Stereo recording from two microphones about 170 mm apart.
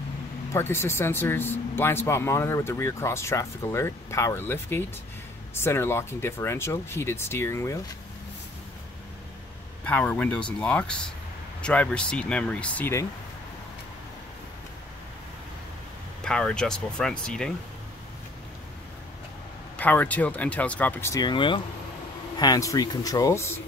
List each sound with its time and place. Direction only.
0.5 s speech: 15° left (ahead or behind)
9.8 s speech: 10° left (ahead or behind)
16.2 s speech: 5° left (ahead or behind)
19.8 s speech: 10° left (ahead or behind)